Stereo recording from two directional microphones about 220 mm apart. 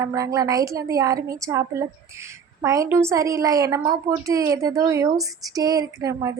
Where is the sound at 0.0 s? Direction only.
15° right (ahead or behind).